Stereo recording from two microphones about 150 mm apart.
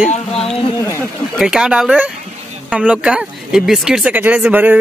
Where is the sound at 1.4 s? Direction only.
5° right (ahead or behind).